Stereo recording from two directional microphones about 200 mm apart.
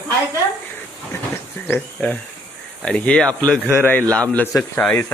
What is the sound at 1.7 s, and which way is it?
Speech, 5° left (ahead or behind).